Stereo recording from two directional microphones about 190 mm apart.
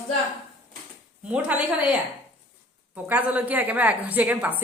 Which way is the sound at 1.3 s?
5° right (ahead or behind).